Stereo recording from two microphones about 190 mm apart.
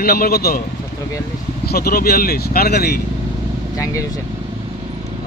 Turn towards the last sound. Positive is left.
turn(degrees=15)  # may be behind; listen again after turning